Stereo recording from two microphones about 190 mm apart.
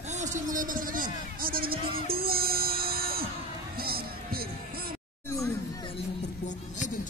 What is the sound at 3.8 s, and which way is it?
Music, 55° right (ahead or behind).